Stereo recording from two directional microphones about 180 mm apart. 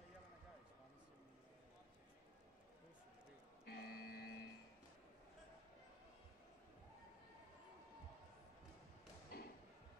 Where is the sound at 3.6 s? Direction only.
60° left (ahead or behind).